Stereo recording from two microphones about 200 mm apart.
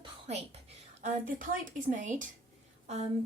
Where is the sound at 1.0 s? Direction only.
45° right (ahead or behind).